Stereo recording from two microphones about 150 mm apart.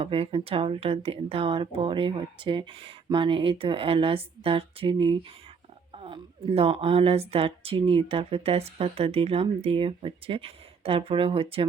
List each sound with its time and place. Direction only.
0.0 s a woman's voice: 40° right (ahead or behind)